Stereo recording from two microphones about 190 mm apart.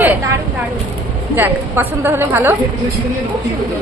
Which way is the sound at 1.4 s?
10° right (ahead or behind).